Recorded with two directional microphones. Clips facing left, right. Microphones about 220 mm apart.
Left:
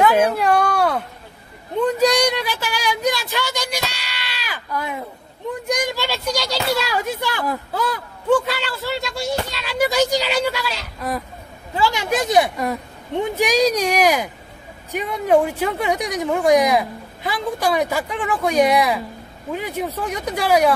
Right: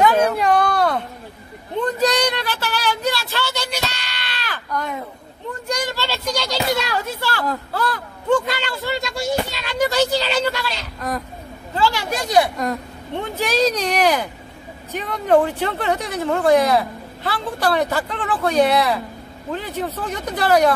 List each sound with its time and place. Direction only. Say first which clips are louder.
0.0 s a sound: even; 5° left (ahead or behind)
5.7 s speech: left 1 dB; 15° left (ahead or behind)
12.5 s speech: even; 5° left (ahead or behind)